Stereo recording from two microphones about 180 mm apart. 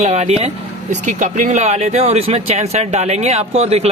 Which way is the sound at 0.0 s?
40° right (ahead or behind).